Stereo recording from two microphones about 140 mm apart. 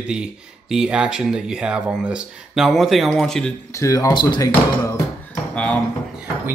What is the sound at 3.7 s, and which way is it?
Speech, 20° left (ahead or behind).